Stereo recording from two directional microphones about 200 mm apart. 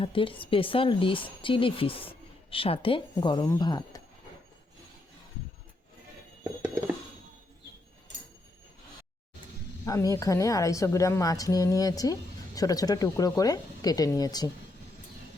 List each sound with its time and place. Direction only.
0.0 s speech: 25° left (ahead or behind)
9.8 s a woman's voice: 15° left (ahead or behind)